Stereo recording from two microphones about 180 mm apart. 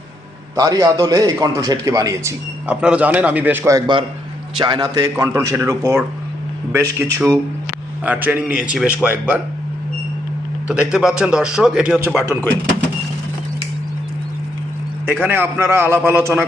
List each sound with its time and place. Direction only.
0.5 s a man's voice: 20° right (ahead or behind)
7.0 s a man's voice: 15° right (ahead or behind)
10.7 s a man's voice: 5° right (ahead or behind)
15.0 s a man's voice: 10° right (ahead or behind)